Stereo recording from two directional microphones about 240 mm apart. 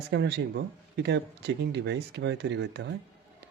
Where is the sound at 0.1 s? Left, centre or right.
Right.